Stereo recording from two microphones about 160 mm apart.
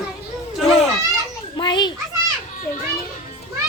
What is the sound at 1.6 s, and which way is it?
Speech, 30° left (ahead or behind).